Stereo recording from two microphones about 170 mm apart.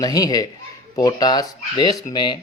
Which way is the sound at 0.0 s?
20° left (ahead or behind).